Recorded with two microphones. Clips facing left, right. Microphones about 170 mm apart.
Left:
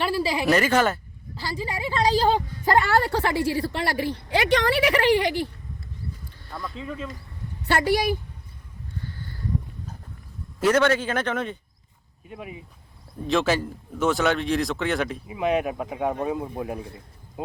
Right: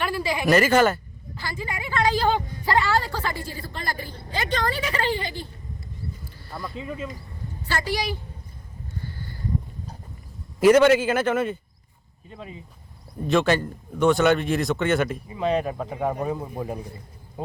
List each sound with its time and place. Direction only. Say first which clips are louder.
0.0 s speech: left 2 dB; 30° left (ahead or behind)
0.5 s a man's voice: right 4 dB; centre (ahead or behind)
1.4 s a woman's voice: left 3 dB; 30° left (ahead or behind)
2.7 s a woman's voice: left 2 dB; 55° left (ahead or behind); by 5.5 s 75° left (ahead or behind)
6.4 s a man's voice: even; 5° right (ahead or behind)
7.6 s a woman's voice: left 6 dB; 65° left (ahead or behind)
10.6 s a man's voice: right 5 dB; 10° right (ahead or behind)
12.3 s speech: left 2 dB; 15° left (ahead or behind)
13.2 s a man's voice: right 2 dB; centre (ahead or behind)
15.3 s a man's voice: left 3 dB; 10° left (ahead or behind)